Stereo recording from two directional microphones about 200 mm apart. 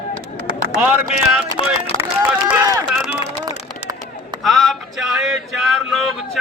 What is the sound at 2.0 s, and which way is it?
Speech, 10° right (ahead or behind).